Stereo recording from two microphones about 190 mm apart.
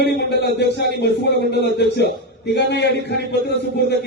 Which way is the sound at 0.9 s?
60° left (ahead or behind).